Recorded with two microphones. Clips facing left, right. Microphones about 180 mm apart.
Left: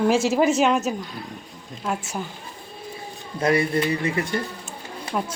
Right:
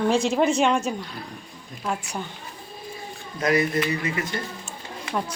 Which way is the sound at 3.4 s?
30° left (ahead or behind).